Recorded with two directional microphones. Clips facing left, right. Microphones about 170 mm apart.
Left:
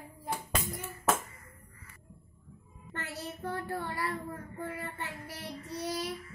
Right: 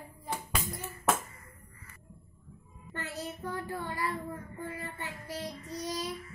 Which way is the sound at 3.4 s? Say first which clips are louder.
Left 2 dB; 60° left (ahead or behind).